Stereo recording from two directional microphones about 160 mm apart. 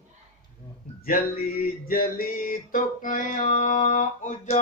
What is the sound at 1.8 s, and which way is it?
Mantra, 65° left (ahead or behind).